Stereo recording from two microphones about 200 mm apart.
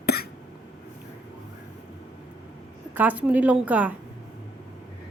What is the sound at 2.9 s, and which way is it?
A woman's voice, 10° right (ahead or behind).